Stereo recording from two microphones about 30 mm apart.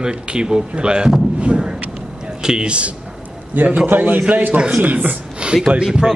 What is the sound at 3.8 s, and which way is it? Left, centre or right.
Speech, right.